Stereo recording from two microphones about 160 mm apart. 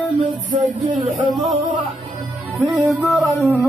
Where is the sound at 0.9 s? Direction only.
50° right (ahead or behind).